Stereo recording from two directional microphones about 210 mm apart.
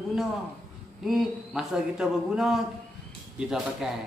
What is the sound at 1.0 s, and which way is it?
A man's voice, centre (ahead or behind).